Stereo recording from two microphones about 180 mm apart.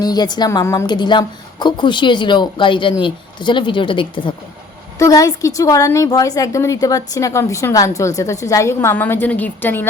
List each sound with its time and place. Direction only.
0.0 s a woman's voice: 20° left (ahead or behind)